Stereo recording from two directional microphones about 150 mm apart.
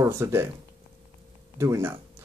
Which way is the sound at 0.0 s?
15° right (ahead or behind).